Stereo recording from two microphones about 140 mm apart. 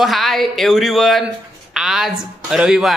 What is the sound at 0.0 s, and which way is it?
Speech, centre (ahead or behind).